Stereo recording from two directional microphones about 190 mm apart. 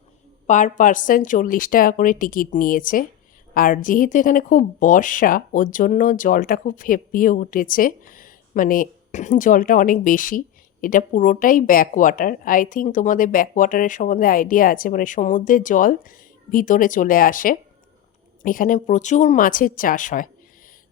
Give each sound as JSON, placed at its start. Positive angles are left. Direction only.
{"t": 0.4, "sound": "speech", "side_deg": 40}